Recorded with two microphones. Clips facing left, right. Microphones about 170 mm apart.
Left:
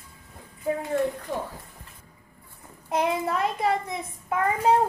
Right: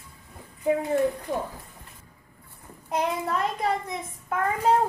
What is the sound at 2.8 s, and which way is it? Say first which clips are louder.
A child's voice: left 2 dB; 5° left (ahead or behind).